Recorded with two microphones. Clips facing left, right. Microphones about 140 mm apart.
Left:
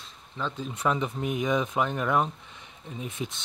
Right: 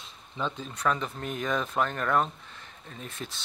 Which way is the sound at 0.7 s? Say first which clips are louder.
Left 3 dB; 20° left (ahead or behind).